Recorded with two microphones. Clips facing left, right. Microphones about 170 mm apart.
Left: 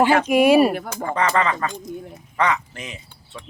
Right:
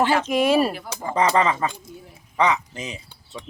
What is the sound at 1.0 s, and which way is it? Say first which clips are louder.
Speech: right 2 dB; 20° right (ahead or behind).